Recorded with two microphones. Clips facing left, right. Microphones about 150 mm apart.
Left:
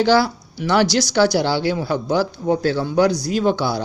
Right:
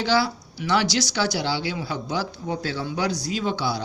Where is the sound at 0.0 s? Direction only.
50° left (ahead or behind).